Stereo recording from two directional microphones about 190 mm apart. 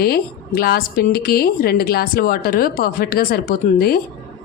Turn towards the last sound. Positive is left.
turn(degrees=50)  # may be behind; listen again after turning